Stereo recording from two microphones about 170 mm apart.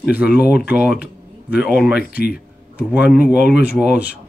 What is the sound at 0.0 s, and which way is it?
Speech, 5° right (ahead or behind).